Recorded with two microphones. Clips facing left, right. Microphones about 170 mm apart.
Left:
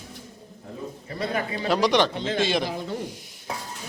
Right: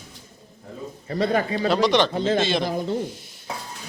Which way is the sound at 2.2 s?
40° right (ahead or behind).